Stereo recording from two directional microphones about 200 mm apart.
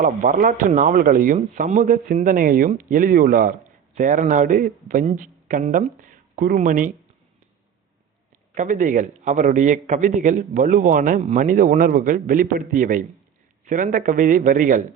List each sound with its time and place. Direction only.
0.0 s speech: 40° right (ahead or behind)
8.5 s speech: 40° right (ahead or behind)